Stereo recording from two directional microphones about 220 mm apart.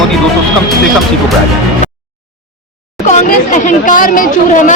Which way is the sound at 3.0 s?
35° left (ahead or behind).